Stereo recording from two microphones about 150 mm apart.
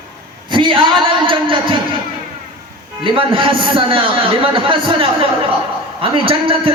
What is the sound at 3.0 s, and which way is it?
A man's voice, 35° right (ahead or behind).